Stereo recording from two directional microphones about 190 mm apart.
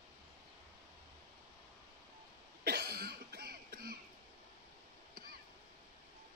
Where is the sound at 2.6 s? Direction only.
55° right (ahead or behind).